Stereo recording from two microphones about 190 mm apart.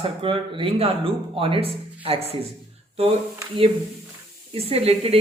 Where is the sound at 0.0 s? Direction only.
25° right (ahead or behind).